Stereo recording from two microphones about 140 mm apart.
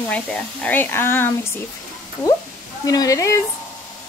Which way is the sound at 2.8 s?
25° left (ahead or behind).